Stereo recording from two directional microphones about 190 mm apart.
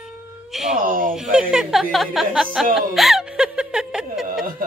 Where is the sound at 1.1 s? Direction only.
5° right (ahead or behind).